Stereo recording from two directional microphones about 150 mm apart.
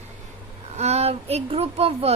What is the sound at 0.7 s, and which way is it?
Speech, 45° right (ahead or behind).